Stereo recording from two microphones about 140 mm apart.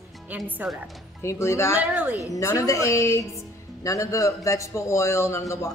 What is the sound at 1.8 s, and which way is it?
Speech, 10° right (ahead or behind).